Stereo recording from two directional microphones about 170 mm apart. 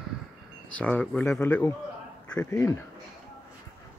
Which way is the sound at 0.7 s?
10° left (ahead or behind).